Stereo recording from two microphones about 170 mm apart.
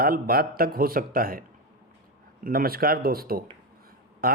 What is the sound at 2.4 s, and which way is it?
Speech, 60° right (ahead or behind).